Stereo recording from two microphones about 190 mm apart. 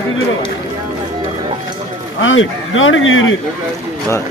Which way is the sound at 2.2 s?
90° left.